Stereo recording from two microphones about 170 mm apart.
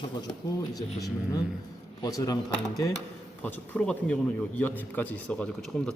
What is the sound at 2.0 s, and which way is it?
Speech, 20° left (ahead or behind).